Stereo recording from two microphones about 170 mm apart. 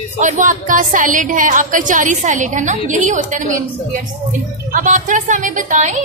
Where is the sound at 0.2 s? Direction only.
45° right (ahead or behind).